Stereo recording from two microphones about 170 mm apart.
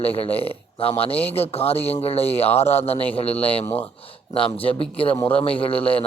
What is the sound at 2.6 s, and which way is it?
Speech, 15° left (ahead or behind).